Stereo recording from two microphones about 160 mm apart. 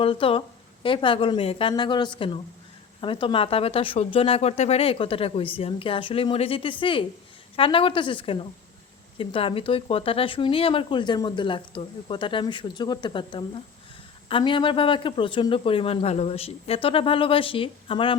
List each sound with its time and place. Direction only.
0.0 s speech: 35° left (ahead or behind)